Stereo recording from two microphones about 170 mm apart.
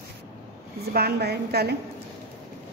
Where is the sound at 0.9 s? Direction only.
70° right (ahead or behind).